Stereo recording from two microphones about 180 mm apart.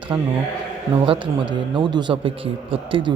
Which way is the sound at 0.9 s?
30° right (ahead or behind).